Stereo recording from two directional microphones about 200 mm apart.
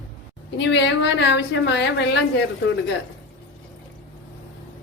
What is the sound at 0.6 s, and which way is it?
A woman's voice, 65° left (ahead or behind).